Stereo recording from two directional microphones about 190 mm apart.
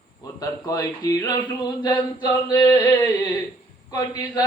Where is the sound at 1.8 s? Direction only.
20° left (ahead or behind).